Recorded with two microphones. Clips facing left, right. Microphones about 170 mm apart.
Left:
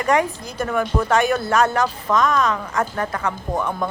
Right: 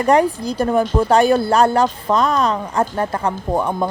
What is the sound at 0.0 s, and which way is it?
A woman's voice, 35° right (ahead or behind).